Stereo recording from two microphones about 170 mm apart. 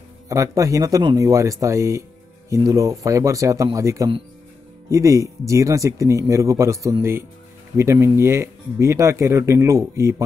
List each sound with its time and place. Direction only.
0.3 s speech: 20° right (ahead or behind)